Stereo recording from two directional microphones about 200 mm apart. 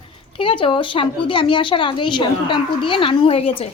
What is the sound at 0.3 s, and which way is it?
A woman's voice, 25° left (ahead or behind).